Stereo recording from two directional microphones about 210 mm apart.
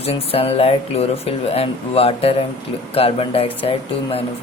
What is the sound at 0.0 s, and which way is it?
Speech, 30° left (ahead or behind).